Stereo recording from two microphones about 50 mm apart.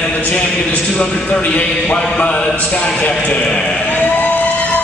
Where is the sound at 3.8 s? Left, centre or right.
Left.